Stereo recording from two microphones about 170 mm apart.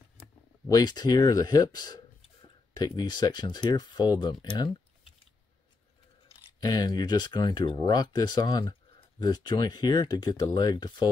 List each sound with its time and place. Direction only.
0.7 s speech: 25° left (ahead or behind)
6.6 s speech: 25° left (ahead or behind)